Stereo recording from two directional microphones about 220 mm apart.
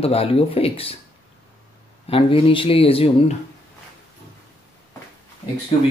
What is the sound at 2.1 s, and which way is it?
Speech, 25° left (ahead or behind).